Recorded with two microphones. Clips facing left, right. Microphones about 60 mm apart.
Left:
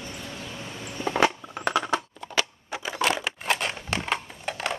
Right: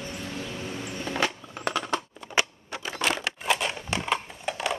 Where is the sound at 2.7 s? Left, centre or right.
Centre.